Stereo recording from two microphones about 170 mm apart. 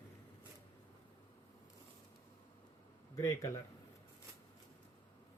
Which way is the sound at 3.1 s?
15° left (ahead or behind).